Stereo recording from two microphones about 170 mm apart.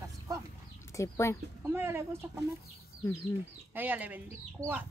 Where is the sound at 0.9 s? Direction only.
15° left (ahead or behind).